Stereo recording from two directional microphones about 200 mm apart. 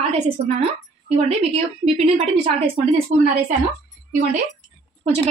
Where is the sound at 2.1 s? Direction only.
30° right (ahead or behind).